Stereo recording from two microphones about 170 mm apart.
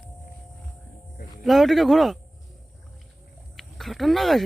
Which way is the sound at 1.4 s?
Centre (ahead or behind).